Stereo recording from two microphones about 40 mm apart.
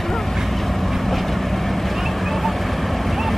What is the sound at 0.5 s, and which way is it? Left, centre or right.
Vehicle, centre.